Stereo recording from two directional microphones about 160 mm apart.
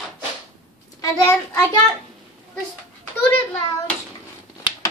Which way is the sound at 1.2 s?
15° left (ahead or behind).